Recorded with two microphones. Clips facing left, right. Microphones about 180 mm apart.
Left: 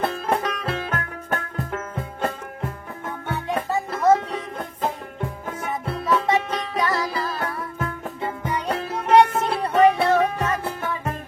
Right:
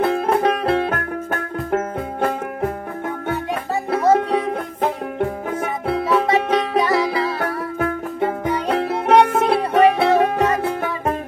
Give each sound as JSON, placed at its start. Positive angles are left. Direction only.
{"t": 0.0, "sound": "music", "side_deg": -60}
{"t": 3.9, "sound": "music", "side_deg": -65}